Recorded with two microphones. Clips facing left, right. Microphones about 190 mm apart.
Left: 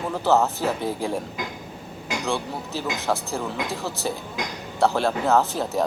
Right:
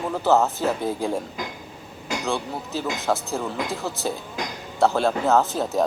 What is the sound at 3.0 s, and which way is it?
Speech, centre (ahead or behind).